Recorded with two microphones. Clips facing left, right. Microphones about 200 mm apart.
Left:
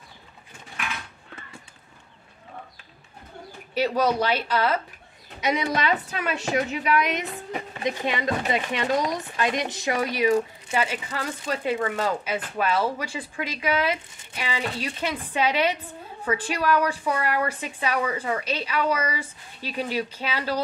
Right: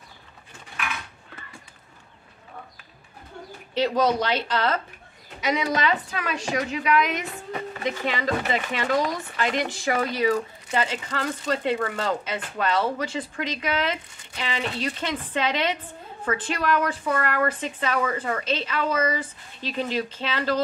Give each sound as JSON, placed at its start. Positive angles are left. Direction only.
{"t": 3.7, "sound": "speech", "side_deg": 10}
{"t": 6.1, "sound": "a woman's voice", "side_deg": 25}
{"t": 10.7, "sound": "speech", "side_deg": 10}